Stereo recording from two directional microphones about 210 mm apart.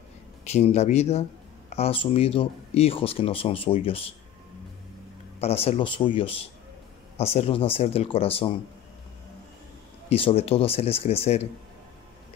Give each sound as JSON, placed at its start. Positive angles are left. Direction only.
{"t": 0.4, "sound": "speech", "side_deg": 30}
{"t": 5.4, "sound": "speech", "side_deg": 30}
{"t": 10.0, "sound": "speech", "side_deg": 30}